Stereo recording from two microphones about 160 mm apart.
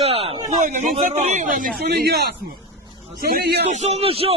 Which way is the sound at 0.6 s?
50° right (ahead or behind).